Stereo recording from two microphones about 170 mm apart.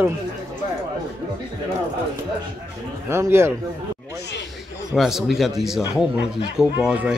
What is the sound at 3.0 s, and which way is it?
Speech, 15° right (ahead or behind).